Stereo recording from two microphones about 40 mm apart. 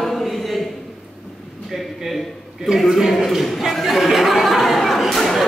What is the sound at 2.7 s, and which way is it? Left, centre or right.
Speech, centre.